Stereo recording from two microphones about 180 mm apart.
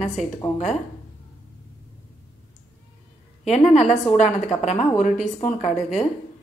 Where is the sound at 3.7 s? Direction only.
40° left (ahead or behind).